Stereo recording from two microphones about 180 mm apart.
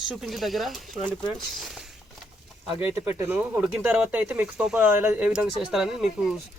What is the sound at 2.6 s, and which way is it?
Speech, 5° right (ahead or behind).